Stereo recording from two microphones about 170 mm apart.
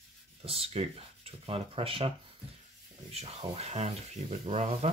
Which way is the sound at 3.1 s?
35° right (ahead or behind).